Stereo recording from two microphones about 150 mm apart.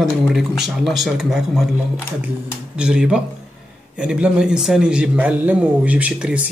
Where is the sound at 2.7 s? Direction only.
5° right (ahead or behind).